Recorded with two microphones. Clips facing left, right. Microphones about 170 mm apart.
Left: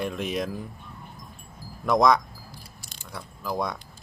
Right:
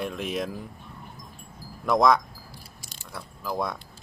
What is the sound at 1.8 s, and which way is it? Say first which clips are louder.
Speech: even; centre (ahead or behind).